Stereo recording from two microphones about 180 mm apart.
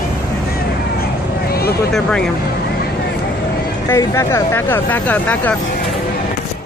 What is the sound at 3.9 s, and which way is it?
Speech, 15° left (ahead or behind).